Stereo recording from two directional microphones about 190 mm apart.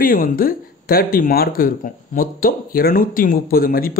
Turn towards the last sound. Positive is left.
turn(degrees=50)  # may be behind; listen again after turning